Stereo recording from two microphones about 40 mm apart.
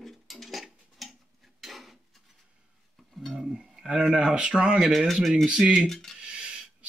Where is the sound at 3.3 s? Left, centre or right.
Centre.